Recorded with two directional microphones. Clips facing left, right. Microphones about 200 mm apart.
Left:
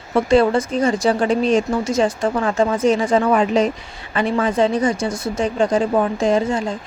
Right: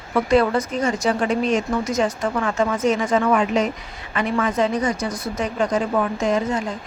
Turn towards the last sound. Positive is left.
turn(degrees=30)  # may be behind; listen again after turning